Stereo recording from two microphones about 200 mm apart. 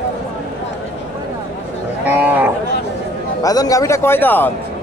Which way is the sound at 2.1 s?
10° right (ahead or behind).